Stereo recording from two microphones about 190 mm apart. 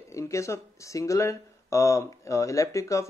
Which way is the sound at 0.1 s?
15° left (ahead or behind).